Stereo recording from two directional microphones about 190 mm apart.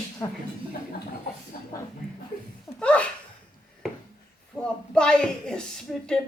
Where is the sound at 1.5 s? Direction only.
50° left (ahead or behind).